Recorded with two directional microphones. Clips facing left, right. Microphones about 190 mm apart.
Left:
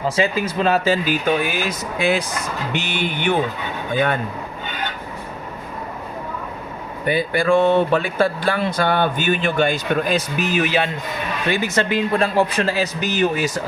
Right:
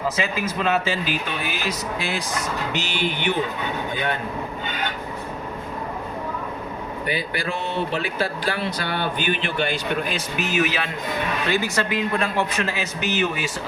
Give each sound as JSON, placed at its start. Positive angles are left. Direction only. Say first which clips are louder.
{"t": 0.2, "sound": "speech", "louder": "left 5 dB", "side_deg": 35}
{"t": 7.1, "sound": "speech", "louder": "left 11 dB", "side_deg": 50}
{"t": 11.5, "sound": "speech", "louder": "left 5 dB", "side_deg": 20}